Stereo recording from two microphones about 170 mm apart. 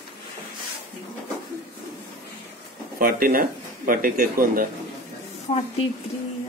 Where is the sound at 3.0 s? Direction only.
55° right (ahead or behind).